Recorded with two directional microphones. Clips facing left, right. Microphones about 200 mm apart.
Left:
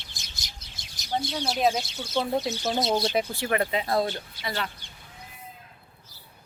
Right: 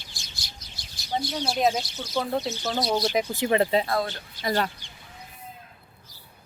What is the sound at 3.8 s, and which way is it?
Speech, 25° left (ahead or behind).